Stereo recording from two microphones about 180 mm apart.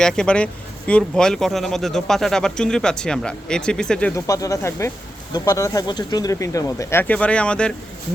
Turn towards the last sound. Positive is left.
turn(degrees=5)  # may be behind; listen again after turning